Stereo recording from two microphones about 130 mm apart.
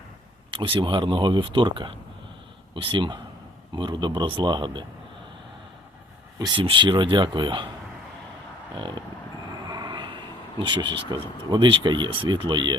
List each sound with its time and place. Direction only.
0.5 s speech: 40° right (ahead or behind)
6.6 s speech: 40° right (ahead or behind)
8.7 s speech: 35° right (ahead or behind)